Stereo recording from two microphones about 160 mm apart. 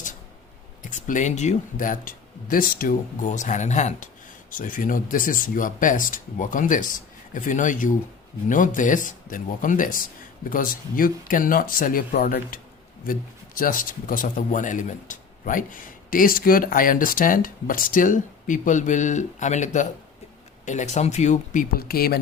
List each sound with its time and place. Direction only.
0.8 s speech: 55° left (ahead or behind); by 22.2 s 70° left (ahead or behind)